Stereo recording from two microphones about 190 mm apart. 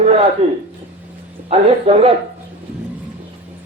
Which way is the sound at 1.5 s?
30° right (ahead or behind).